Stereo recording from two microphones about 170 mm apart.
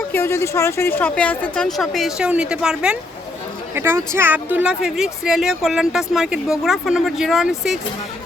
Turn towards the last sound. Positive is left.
turn(degrees=0)  # may be behind; listen again after turning